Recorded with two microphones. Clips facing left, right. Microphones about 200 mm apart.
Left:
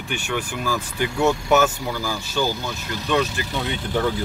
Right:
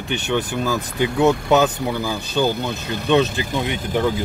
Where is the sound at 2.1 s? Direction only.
20° right (ahead or behind).